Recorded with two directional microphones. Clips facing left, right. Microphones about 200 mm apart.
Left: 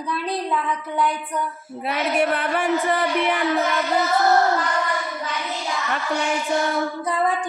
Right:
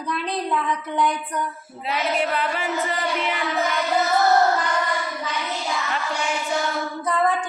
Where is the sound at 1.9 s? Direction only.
55° left (ahead or behind).